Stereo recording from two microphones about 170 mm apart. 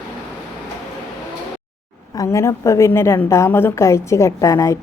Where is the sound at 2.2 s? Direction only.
15° left (ahead or behind).